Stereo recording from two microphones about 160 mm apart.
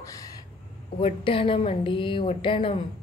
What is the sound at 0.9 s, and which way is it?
A woman's voice, 35° left (ahead or behind).